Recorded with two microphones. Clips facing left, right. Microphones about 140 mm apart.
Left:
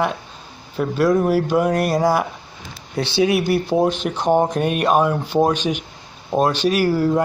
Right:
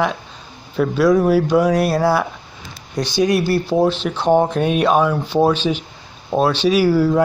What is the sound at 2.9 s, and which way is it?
Speech, 65° left (ahead or behind).